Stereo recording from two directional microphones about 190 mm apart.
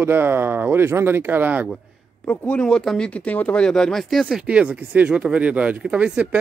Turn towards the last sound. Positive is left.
turn(degrees=-5)  # may be behind; listen again after turning